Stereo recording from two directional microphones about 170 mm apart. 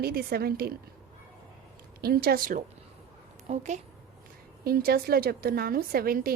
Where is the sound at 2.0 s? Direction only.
65° right (ahead or behind).